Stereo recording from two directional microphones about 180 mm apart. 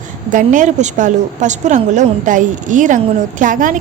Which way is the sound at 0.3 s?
45° right (ahead or behind).